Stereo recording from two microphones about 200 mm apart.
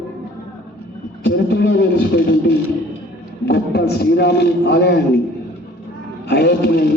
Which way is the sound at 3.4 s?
55° left (ahead or behind).